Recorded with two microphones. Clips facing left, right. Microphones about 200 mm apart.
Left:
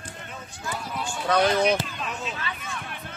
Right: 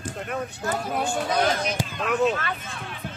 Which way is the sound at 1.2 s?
60° left (ahead or behind).